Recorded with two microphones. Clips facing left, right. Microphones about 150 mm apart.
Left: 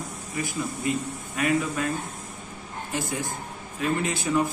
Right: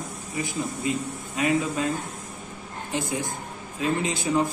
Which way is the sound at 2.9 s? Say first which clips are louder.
Right 2 dB; 15° right (ahead or behind).